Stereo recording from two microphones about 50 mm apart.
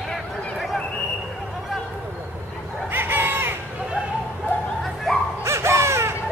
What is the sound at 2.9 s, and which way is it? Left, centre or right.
Crow, right.